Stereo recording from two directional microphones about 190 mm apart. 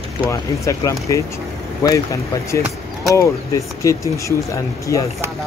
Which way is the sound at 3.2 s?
15° left (ahead or behind).